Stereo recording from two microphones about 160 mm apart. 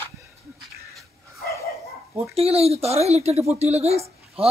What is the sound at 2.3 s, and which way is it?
Speech, 40° right (ahead or behind).